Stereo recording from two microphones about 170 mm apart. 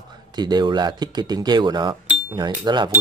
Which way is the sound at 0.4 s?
25° right (ahead or behind).